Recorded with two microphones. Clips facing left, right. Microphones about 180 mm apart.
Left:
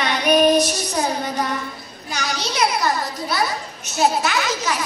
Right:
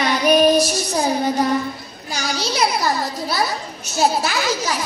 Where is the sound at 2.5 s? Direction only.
30° right (ahead or behind).